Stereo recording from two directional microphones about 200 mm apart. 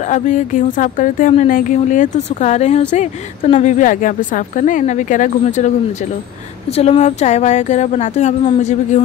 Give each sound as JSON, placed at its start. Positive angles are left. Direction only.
{"t": 0.1, "sound": "speech", "side_deg": 40}
{"t": 6.8, "sound": "speech", "side_deg": 30}